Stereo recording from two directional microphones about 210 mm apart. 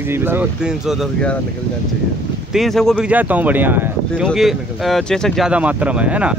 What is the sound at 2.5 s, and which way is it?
Speech, centre (ahead or behind).